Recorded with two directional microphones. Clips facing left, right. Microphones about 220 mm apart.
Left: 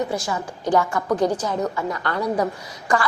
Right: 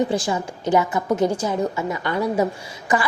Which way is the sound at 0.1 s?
30° right (ahead or behind).